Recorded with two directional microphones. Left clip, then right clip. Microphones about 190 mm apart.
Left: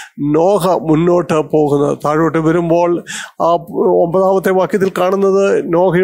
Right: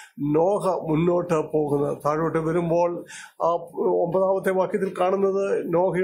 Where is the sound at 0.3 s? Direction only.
40° left (ahead or behind).